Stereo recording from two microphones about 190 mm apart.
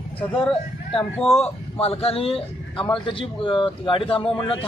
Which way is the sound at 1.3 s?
30° left (ahead or behind).